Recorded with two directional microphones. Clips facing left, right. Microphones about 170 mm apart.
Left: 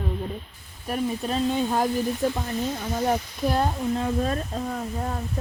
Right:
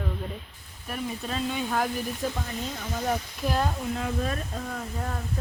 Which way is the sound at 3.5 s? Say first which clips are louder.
Left 3 dB; 30° left (ahead or behind).